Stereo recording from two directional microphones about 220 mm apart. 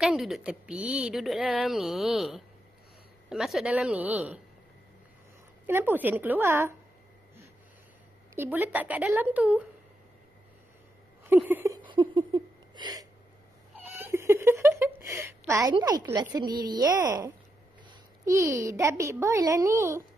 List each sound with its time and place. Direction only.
0.0 s speech: centre (ahead or behind)
5.7 s a woman's voice: 10° right (ahead or behind)
8.4 s a woman's voice: 10° right (ahead or behind)
11.2 s a sound: 10° right (ahead or behind)
15.7 s a woman's voice: 20° right (ahead or behind)